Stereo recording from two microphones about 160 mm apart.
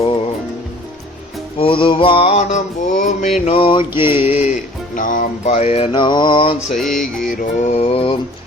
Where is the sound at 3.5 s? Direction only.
35° left (ahead or behind).